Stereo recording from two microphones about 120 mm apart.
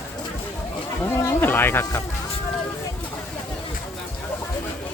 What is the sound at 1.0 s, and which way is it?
Speech, 20° left (ahead or behind).